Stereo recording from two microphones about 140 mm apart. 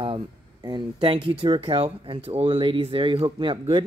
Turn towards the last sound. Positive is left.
turn(degrees=-35)  # may be behind; listen again after turning